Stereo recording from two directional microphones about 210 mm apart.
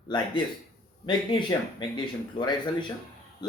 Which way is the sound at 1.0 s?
20° left (ahead or behind).